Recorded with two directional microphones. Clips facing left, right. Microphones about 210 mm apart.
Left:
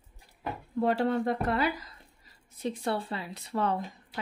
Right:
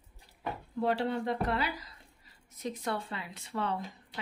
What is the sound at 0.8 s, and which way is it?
Speech, 45° left (ahead or behind).